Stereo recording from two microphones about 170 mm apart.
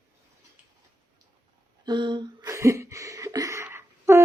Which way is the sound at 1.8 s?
25° right (ahead or behind).